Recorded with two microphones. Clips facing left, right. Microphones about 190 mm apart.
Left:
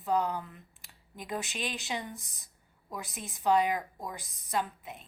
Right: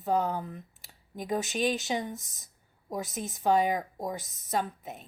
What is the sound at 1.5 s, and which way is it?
A woman's voice, 40° right (ahead or behind).